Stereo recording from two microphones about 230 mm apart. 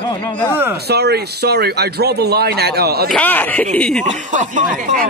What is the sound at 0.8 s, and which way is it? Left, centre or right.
Speech, right.